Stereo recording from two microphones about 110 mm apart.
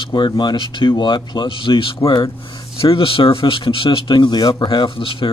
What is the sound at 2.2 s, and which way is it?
Speech, 35° left (ahead or behind).